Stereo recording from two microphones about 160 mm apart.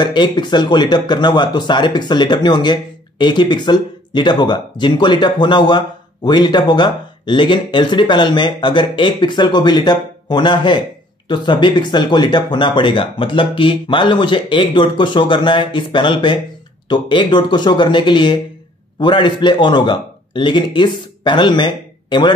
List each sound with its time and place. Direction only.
0.0 s a man's voice: 30° left (ahead or behind)